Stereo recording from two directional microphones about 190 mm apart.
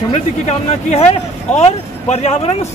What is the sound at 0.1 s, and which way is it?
Speech, 35° left (ahead or behind).